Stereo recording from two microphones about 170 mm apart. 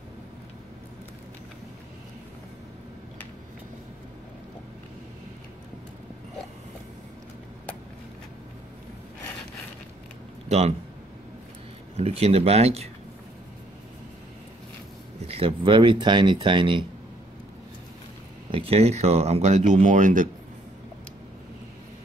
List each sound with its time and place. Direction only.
12.0 s speech: 35° right (ahead or behind)
15.2 s speech: 35° right (ahead or behind)
18.5 s speech: 35° right (ahead or behind)